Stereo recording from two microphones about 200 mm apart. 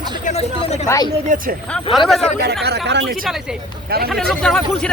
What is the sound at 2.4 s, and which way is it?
Speech, 55° right (ahead or behind).